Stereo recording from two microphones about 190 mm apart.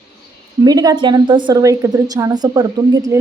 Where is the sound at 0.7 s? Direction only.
20° right (ahead or behind).